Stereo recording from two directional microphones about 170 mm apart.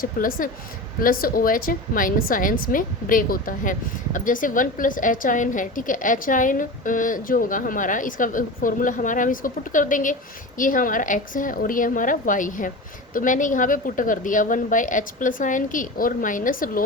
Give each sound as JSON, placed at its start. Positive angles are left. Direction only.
{"t": 0.0, "sound": "a woman's voice", "side_deg": 55}